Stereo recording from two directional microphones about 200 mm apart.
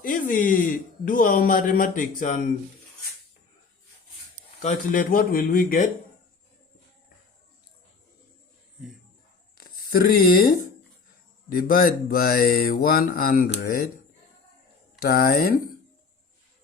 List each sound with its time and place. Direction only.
0.0 s a man's voice: 45° left (ahead or behind)
4.6 s a man's voice: 45° left (ahead or behind)
9.6 s a man's voice: 45° left (ahead or behind)
15.0 s a man's voice: 50° left (ahead or behind)